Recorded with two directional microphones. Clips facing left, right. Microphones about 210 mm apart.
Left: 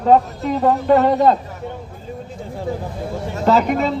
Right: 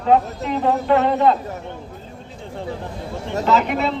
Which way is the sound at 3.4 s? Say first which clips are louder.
Left 3 dB; 40° left (ahead or behind).